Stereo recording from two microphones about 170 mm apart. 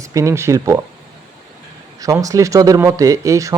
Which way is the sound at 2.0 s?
20° right (ahead or behind).